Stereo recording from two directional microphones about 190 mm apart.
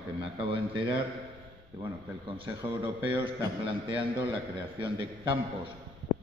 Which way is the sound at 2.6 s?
15° right (ahead or behind).